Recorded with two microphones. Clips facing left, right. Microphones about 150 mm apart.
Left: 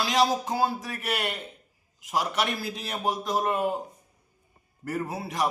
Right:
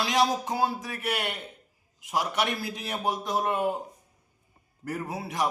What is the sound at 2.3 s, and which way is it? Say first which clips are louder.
Speech: even; 15° right (ahead or behind).